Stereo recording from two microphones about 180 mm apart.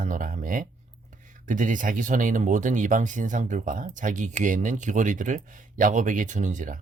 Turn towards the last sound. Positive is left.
turn(degrees=-45)  # may be behind; listen again after turning